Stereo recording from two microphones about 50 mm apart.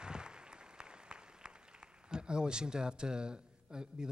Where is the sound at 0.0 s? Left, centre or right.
Centre.